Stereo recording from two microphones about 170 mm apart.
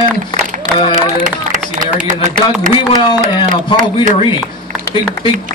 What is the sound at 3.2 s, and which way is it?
Speech, 50° right (ahead or behind).